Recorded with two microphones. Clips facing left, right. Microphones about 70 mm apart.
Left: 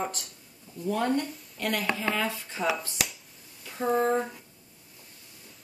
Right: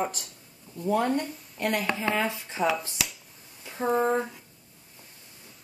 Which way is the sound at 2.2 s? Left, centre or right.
Right.